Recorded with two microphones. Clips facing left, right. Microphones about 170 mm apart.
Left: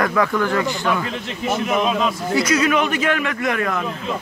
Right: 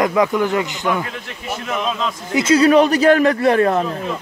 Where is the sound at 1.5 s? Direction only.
15° left (ahead or behind).